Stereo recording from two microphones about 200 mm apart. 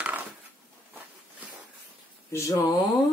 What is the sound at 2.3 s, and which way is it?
Speech, 15° left (ahead or behind).